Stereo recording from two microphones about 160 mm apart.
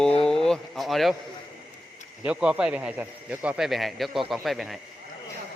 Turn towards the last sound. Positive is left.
turn(degrees=0)  # may be behind; listen again after turning